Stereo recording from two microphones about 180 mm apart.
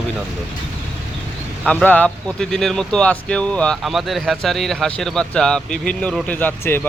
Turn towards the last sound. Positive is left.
turn(degrees=10)  # may be behind; listen again after turning